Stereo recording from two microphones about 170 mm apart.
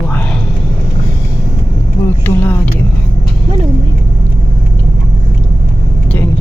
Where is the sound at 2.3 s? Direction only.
10° left (ahead or behind).